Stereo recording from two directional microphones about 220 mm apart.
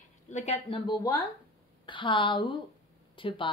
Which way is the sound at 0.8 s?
20° left (ahead or behind).